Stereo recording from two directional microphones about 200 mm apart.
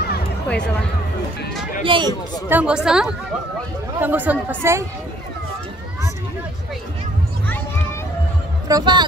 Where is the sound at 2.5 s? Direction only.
5° right (ahead or behind).